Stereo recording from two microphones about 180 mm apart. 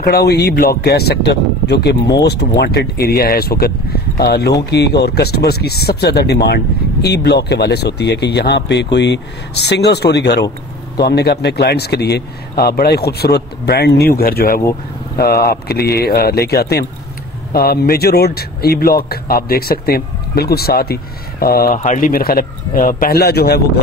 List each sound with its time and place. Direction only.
0.0 s speech: 60° left (ahead or behind)